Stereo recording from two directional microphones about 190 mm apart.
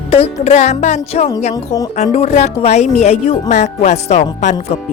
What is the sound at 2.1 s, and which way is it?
Speech, 35° left (ahead or behind).